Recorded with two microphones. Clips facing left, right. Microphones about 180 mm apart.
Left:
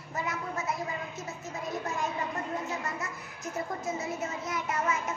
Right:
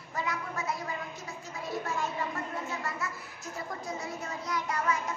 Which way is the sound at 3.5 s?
20° left (ahead or behind).